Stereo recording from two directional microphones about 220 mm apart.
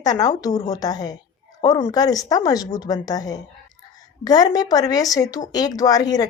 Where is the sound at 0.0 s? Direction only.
15° left (ahead or behind).